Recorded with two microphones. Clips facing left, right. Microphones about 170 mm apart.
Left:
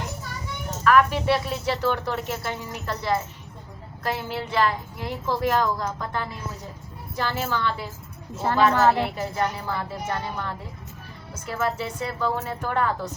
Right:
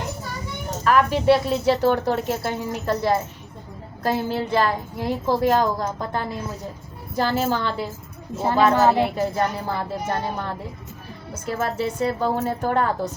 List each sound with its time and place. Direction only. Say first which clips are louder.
0.9 s speech: right 2 dB; 35° right (ahead or behind)
8.7 s a woman's voice: right 3 dB; 15° right (ahead or behind)
9.0 s speech: right 4 dB; 35° right (ahead or behind)
11.6 s speech: right 4 dB; 45° right (ahead or behind)